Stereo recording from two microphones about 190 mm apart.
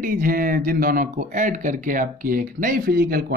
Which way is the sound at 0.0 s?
45° right (ahead or behind).